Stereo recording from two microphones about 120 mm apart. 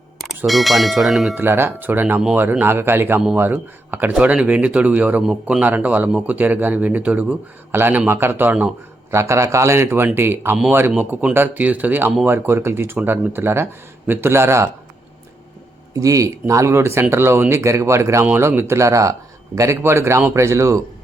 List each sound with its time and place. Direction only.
0.2 s speech: centre (ahead or behind)
1.4 s speech: 20° right (ahead or behind)
16.0 s speech: 25° right (ahead or behind)